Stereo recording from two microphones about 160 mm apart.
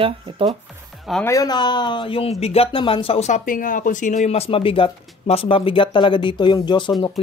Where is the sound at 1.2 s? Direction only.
25° left (ahead or behind).